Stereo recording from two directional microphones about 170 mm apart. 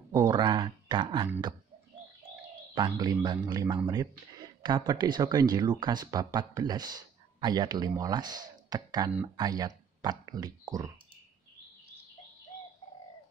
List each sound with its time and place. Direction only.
0.2 s speech: 30° right (ahead or behind)
2.7 s speech: 25° right (ahead or behind)